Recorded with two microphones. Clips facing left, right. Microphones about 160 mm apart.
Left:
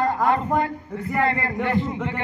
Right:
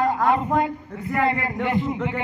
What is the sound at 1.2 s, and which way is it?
Speech, 15° right (ahead or behind).